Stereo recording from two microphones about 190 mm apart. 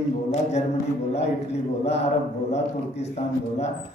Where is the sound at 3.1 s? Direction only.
35° left (ahead or behind).